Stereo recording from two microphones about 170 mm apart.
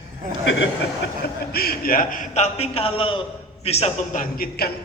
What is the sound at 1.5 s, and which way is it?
A man's voice, 65° left (ahead or behind).